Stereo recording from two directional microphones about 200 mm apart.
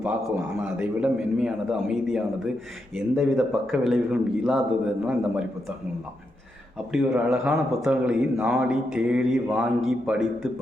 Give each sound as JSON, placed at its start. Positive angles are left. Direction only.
{"t": 0.0, "sound": "a man's voice", "side_deg": -5}
{"t": 6.9, "sound": "a man's voice", "side_deg": -5}